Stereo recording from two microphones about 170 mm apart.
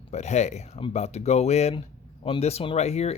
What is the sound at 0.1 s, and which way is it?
Speech, 40° left (ahead or behind).